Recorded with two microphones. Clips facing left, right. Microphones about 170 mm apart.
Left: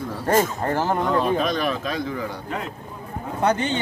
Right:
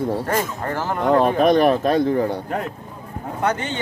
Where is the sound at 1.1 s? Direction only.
55° right (ahead or behind).